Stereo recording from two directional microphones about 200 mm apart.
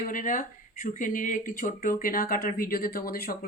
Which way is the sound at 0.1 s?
40° left (ahead or behind).